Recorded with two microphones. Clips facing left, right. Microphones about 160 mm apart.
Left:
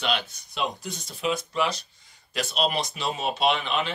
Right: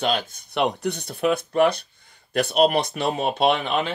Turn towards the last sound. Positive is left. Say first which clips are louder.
# right 4 dB
turn(degrees=-50)  # may be behind; listen again after turning